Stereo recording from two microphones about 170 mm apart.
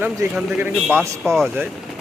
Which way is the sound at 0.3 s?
10° right (ahead or behind).